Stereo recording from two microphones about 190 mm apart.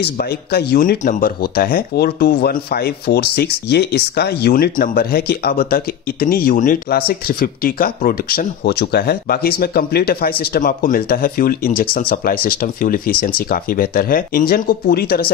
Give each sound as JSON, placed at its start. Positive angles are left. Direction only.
{"t": 0.0, "sound": "speech", "side_deg": 55}